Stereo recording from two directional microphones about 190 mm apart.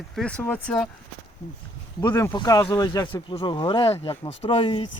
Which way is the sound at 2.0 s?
15° left (ahead or behind).